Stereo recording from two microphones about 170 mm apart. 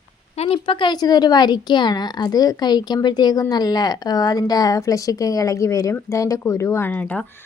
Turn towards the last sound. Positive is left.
turn(degrees=10)  # may be behind; listen again after turning